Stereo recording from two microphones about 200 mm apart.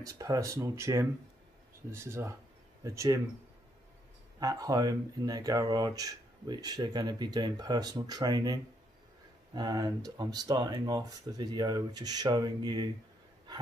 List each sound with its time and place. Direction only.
0.0 s speech: 15° right (ahead or behind)
4.4 s speech: 15° right (ahead or behind)